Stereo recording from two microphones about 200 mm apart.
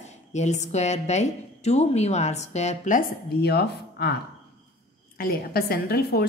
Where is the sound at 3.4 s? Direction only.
50° left (ahead or behind).